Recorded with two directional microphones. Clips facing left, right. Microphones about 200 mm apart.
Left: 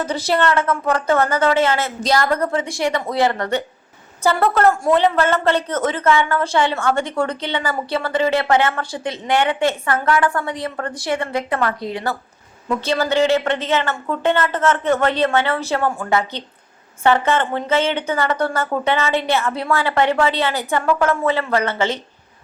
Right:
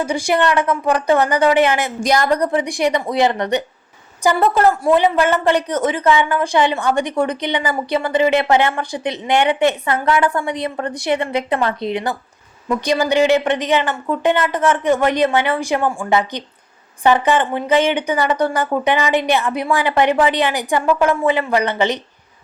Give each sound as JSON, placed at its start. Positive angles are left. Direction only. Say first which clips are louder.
{"t": 0.0, "sound": "a woman's voice", "louder": "right 2 dB", "side_deg": -10}